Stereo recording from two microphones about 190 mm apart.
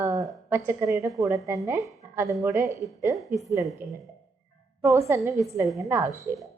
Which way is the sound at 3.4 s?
15° right (ahead or behind).